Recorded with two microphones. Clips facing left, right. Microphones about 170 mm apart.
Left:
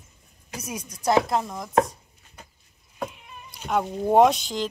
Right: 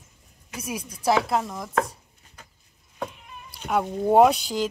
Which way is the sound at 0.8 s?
30° right (ahead or behind).